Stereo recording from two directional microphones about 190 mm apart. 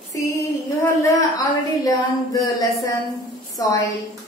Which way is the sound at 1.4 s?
20° left (ahead or behind).